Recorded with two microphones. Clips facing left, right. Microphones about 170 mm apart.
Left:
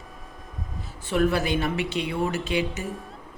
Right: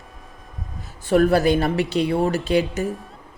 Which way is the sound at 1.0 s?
40° right (ahead or behind).